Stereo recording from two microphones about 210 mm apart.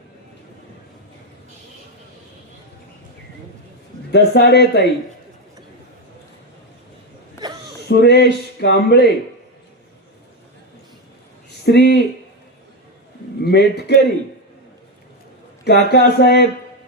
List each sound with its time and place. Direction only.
4.1 s speech: 50° left (ahead or behind)
7.9 s speech: 50° left (ahead or behind)
11.6 s speech: 50° left (ahead or behind)
13.4 s speech: 50° left (ahead or behind)
15.6 s speech: 50° left (ahead or behind)